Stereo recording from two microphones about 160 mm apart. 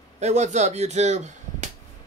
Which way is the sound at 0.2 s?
45° right (ahead or behind).